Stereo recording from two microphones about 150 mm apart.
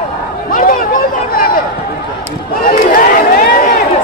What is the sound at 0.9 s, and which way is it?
Chatter, 80° left.